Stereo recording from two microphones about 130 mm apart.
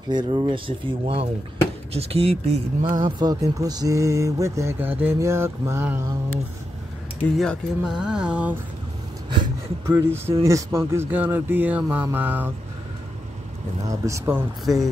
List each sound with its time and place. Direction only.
0.1 s speech: 35° right (ahead or behind); by 2.6 s 50° right (ahead or behind)
2.8 s speech: 35° right (ahead or behind)
7.3 s speech: centre (ahead or behind)
9.8 s speech: 20° right (ahead or behind)
13.8 s speech: 20° right (ahead or behind)
14.7 s speech: centre (ahead or behind)